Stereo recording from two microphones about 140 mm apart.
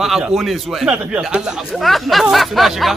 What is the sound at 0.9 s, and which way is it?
Speech, 10° right (ahead or behind).